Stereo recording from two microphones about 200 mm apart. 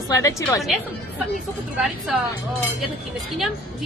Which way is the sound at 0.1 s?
15° left (ahead or behind).